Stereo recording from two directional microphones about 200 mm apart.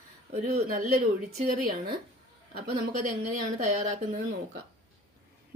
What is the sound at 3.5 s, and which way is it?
Speech, 35° right (ahead or behind).